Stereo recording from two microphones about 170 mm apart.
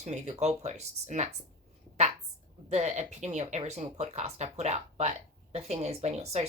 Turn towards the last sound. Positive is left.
turn(degrees=-40)  # may be behind; listen again after turning